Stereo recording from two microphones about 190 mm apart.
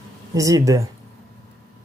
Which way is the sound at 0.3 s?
15° right (ahead or behind).